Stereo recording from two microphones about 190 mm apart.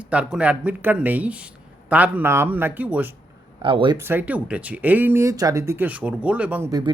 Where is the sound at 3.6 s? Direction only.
25° right (ahead or behind).